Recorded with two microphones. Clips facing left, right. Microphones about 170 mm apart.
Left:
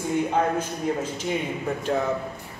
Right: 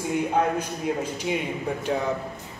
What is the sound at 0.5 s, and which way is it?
Speech, 15° right (ahead or behind).